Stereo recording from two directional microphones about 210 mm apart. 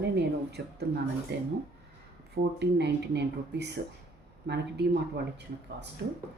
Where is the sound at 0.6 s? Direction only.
50° right (ahead or behind).